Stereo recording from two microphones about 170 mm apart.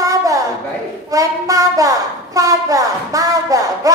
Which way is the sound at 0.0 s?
20° right (ahead or behind).